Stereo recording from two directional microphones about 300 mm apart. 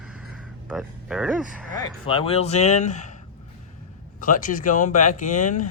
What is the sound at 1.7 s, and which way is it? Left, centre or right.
Speech, centre.